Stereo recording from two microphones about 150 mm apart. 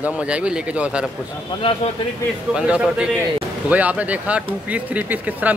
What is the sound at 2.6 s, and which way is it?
Speech, 5° right (ahead or behind).